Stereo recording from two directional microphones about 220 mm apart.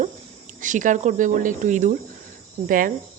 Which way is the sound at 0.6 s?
35° right (ahead or behind).